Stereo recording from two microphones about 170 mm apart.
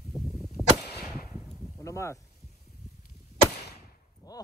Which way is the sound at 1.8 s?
15° left (ahead or behind).